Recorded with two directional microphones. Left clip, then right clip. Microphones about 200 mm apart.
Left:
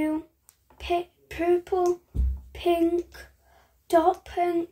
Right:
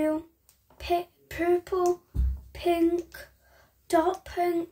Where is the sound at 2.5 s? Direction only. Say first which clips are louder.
Left 1 dB; 10° right (ahead or behind).